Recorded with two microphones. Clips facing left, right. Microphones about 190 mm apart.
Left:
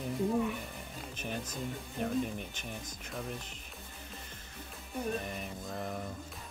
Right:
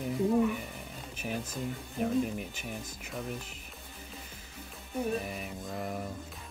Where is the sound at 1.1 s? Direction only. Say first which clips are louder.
Right 3 dB; 5° right (ahead or behind).